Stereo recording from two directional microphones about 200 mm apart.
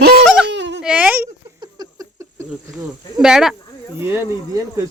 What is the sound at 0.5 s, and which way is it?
Baby cry, 60° right (ahead or behind).